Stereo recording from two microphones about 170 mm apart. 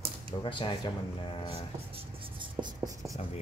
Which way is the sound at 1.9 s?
30° right (ahead or behind).